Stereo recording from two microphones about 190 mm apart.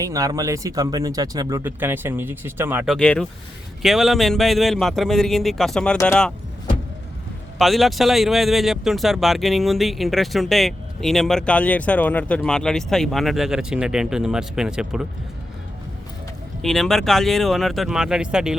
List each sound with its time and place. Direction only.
0.0 s speech: 15° right (ahead or behind)
2.8 s speech: 5° left (ahead or behind)
7.6 s speech: centre (ahead or behind)
16.6 s speech: centre (ahead or behind)